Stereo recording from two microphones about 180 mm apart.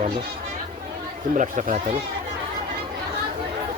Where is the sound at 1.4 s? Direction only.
45° right (ahead or behind).